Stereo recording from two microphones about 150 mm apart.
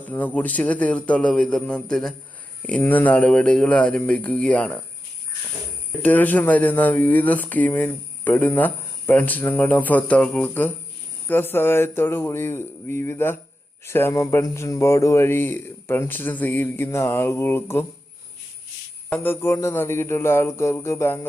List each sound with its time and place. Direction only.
0.0 s speech: 10° left (ahead or behind)
6.0 s speech: 10° left (ahead or behind)
19.1 s speech: 15° left (ahead or behind)